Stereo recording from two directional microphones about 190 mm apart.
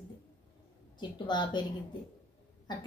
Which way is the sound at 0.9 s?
25° left (ahead or behind).